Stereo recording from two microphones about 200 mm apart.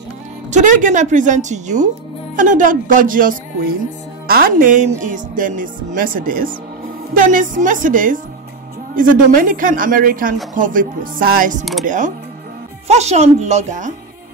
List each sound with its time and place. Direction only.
0.5 s speech: 40° right (ahead or behind)